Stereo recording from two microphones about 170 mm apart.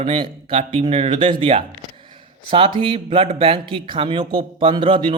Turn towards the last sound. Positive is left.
turn(degrees=-30)  # may be behind; listen again after turning